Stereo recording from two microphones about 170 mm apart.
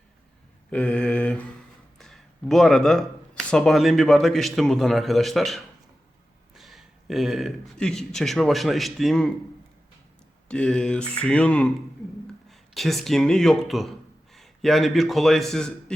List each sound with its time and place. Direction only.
0.7 s mantra: 5° left (ahead or behind)
2.0 s speech: centre (ahead or behind)
10.5 s a man's voice: 5° left (ahead or behind)